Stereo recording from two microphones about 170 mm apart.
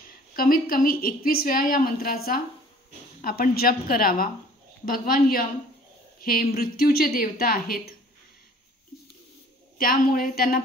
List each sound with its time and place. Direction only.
0.4 s a woman's voice: 60° left (ahead or behind)
9.8 s a woman's voice: 55° left (ahead or behind)